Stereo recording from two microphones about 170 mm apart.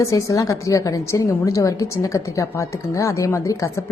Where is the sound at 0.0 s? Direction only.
20° left (ahead or behind).